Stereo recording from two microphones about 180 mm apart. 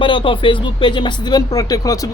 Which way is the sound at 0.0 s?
30° left (ahead or behind).